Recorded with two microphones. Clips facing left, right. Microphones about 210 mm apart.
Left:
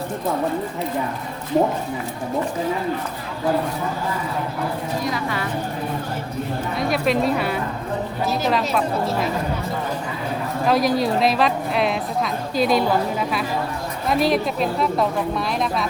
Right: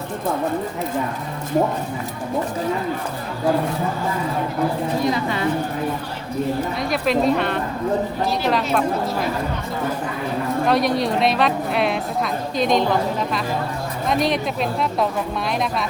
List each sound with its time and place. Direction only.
5.0 s a woman's voice: 25° right (ahead or behind)
6.7 s a woman's voice: centre (ahead or behind)
10.7 s a woman's voice: centre (ahead or behind)
14.1 s a woman's voice: 5° left (ahead or behind)